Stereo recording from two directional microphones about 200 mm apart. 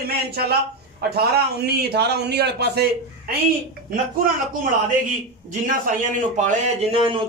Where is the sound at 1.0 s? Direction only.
50° right (ahead or behind).